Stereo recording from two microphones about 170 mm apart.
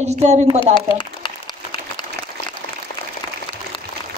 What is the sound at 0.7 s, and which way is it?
Speech, 30° left (ahead or behind).